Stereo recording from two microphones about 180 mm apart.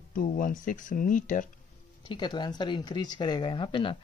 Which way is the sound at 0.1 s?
50° left (ahead or behind).